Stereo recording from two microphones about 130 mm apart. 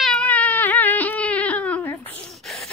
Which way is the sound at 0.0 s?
5° left (ahead or behind).